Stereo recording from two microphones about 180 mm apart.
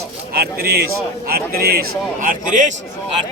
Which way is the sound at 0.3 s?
60° right (ahead or behind).